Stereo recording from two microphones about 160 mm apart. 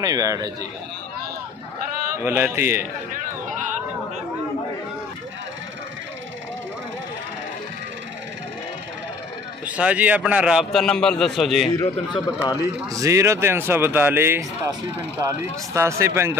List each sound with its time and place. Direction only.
0.0 s a man's voice: 20° right (ahead or behind)
2.2 s speech: 15° right (ahead or behind)
9.7 s a man's voice: 10° right (ahead or behind)
11.7 s a man's voice: 25° left (ahead or behind)
12.6 s speech: 20° right (ahead or behind)